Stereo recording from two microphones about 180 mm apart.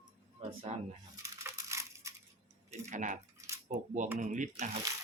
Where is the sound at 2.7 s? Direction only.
40° right (ahead or behind).